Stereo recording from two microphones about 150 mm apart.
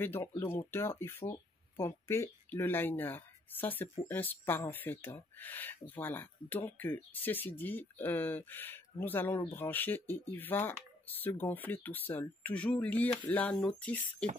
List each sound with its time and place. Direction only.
0.0 s speech: 15° left (ahead or behind)